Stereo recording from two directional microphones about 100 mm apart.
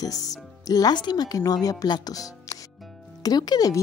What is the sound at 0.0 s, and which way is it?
Speech, 35° left (ahead or behind).